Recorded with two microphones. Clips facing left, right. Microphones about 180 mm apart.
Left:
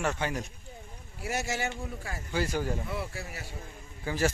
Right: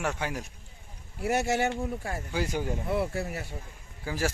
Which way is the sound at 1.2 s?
55° right (ahead or behind).